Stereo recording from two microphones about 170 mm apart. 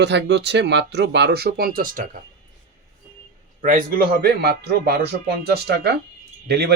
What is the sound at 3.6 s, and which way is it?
A man's voice, 55° right (ahead or behind).